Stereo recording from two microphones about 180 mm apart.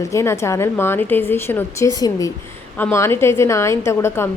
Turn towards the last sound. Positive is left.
turn(degrees=15)  # may be behind; listen again after turning